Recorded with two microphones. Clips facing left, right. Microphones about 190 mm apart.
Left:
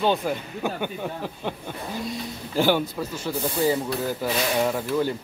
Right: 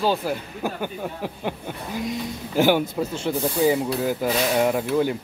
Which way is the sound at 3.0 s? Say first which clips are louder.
Right 4 dB; 25° right (ahead or behind).